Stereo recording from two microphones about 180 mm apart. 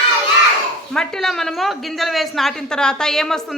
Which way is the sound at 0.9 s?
5° left (ahead or behind).